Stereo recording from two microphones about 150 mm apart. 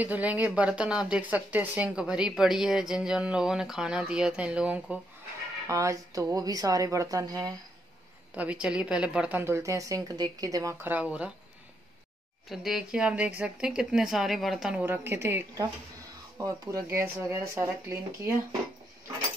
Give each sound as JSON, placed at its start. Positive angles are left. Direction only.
{"t": 0.0, "sound": "a woman's voice", "side_deg": -10}
{"t": 5.7, "sound": "speech", "side_deg": -20}
{"t": 8.4, "sound": "a woman's voice", "side_deg": -10}
{"t": 12.4, "sound": "a woman's voice", "side_deg": 0}